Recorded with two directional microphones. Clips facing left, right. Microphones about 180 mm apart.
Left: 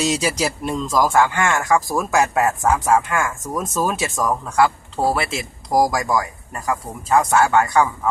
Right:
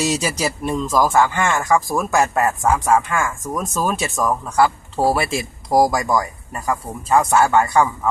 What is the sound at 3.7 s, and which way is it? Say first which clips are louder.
Speech: even; 20° left (ahead or behind).